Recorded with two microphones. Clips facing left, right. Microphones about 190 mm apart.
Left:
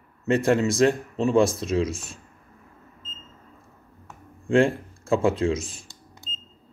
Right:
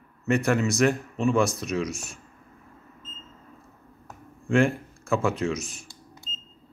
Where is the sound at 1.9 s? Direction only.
90° left.